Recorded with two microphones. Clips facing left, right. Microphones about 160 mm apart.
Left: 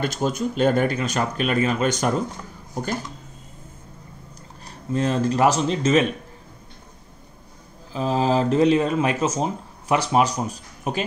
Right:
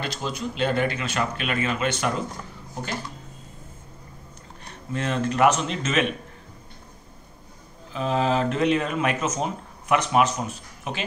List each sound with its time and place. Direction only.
0.0 s speech: 45° left (ahead or behind)
4.6 s speech: 35° left (ahead or behind)
7.9 s speech: 35° left (ahead or behind)